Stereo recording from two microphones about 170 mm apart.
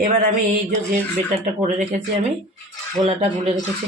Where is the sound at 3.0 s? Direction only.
40° right (ahead or behind).